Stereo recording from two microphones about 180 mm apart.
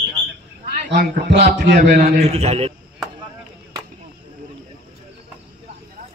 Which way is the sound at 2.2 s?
35° right (ahead or behind).